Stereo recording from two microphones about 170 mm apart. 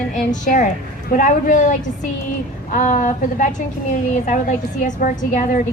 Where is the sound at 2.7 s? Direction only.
45° left (ahead or behind).